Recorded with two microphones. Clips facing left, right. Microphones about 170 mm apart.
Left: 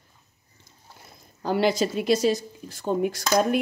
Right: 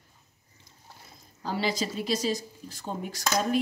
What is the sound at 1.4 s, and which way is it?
Speech, 60° left (ahead or behind).